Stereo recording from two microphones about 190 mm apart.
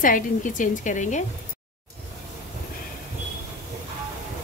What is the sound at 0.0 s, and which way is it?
A woman's voice, 45° left (ahead or behind).